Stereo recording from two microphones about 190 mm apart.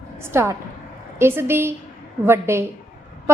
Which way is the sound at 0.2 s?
15° right (ahead or behind).